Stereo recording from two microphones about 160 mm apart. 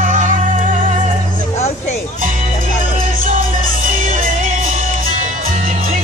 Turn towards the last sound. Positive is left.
turn(degrees=-55)  # may be behind; listen again after turning